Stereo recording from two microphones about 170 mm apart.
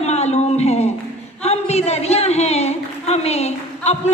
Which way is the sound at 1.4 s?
40° left (ahead or behind).